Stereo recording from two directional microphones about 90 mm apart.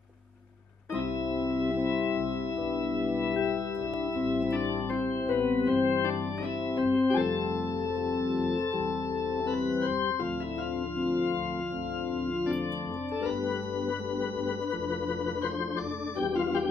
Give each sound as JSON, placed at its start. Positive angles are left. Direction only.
{"t": 1.5, "sound": "music", "side_deg": -10}
{"t": 5.4, "sound": "organ", "side_deg": 15}
{"t": 9.7, "sound": "organ", "side_deg": 20}